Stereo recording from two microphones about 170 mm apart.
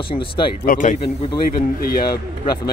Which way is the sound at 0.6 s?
50° left (ahead or behind).